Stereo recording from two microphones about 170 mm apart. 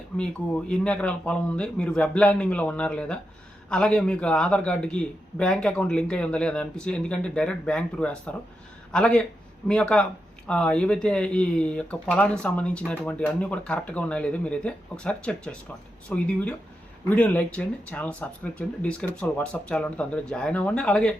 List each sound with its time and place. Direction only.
0.7 s a man's voice: 5° left (ahead or behind)